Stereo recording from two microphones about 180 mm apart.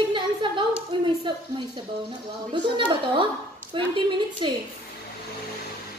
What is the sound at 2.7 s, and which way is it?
A woman's voice, 25° right (ahead or behind).